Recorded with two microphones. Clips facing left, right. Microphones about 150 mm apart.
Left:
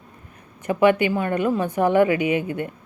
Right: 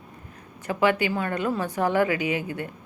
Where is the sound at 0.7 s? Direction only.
20° left (ahead or behind).